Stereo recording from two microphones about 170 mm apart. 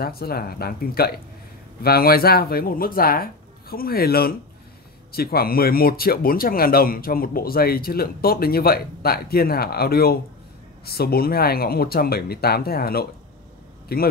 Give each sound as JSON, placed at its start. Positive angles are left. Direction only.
{"t": 0.0, "sound": "speech", "side_deg": 65}